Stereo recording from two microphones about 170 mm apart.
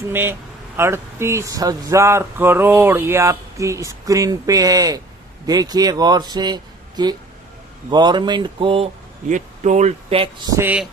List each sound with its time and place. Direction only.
0.1 s speech: 15° right (ahead or behind); by 8.9 s 30° right (ahead or behind)
9.3 s speech: 45° right (ahead or behind)
10.5 s speech: 10° right (ahead or behind)